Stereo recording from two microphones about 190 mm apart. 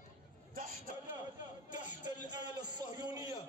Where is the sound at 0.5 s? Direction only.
45° right (ahead or behind).